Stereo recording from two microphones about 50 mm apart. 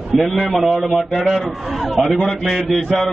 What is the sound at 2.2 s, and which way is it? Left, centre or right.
Speech, centre.